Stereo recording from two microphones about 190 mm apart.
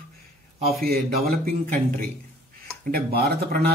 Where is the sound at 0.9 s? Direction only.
50° right (ahead or behind).